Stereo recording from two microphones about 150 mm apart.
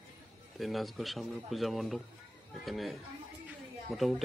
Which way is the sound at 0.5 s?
Centre (ahead or behind).